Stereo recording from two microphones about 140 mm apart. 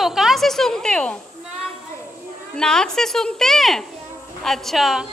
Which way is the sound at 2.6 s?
5° left (ahead or behind).